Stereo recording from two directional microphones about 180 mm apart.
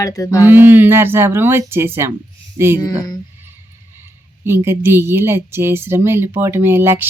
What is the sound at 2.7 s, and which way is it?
Speech, 20° left (ahead or behind).